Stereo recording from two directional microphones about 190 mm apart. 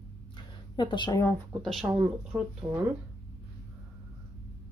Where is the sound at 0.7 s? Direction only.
25° left (ahead or behind).